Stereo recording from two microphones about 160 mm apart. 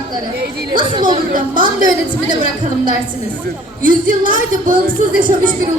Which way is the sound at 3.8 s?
55° right (ahead or behind).